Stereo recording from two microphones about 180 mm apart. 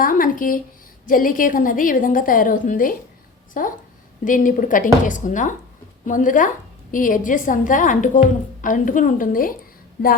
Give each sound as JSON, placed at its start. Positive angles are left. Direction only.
{"t": 0.0, "sound": "a woman's voice", "side_deg": 50}